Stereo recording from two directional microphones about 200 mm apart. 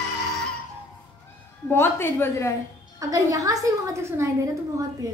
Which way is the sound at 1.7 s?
10° left (ahead or behind).